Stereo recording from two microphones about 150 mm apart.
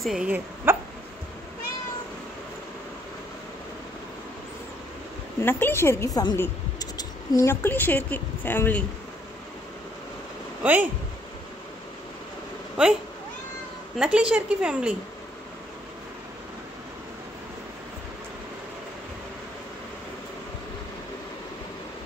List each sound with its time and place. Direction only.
0.0 s speech: 5° right (ahead or behind)
0.7 s hiccup: 15° right (ahead or behind)
5.4 s speech: 15° left (ahead or behind)
10.6 s speech: 10° right (ahead or behind)
12.8 s a woman's voice: 5° right (ahead or behind)
13.9 s a woman's voice: 5° right (ahead or behind)